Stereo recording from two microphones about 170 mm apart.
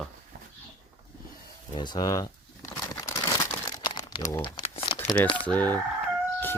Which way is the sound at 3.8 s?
25° left (ahead or behind).